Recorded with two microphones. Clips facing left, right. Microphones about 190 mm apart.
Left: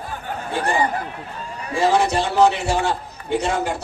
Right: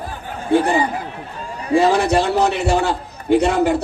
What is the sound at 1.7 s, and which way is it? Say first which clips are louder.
A man's voice: right 4 dB; 60° right (ahead or behind).